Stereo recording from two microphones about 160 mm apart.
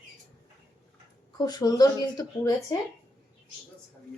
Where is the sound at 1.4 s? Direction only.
25° left (ahead or behind).